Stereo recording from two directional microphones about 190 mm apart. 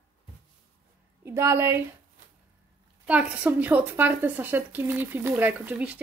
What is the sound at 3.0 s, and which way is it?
A woman's voice, 5° right (ahead or behind).